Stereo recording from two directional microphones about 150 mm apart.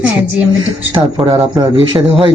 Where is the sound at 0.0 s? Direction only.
10° right (ahead or behind).